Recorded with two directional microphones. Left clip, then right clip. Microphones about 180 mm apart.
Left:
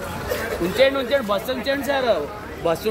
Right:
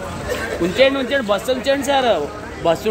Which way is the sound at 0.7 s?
55° right (ahead or behind).